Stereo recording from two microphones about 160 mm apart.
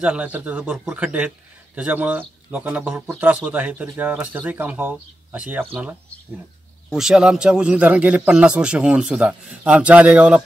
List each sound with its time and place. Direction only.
0.0 s speech: 5° right (ahead or behind)
6.9 s speech: 5° right (ahead or behind)